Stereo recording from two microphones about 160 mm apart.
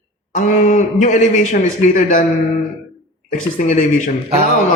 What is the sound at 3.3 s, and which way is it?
Speech, 50° left (ahead or behind).